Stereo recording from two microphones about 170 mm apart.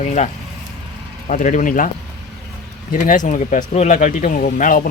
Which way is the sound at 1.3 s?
50° left (ahead or behind).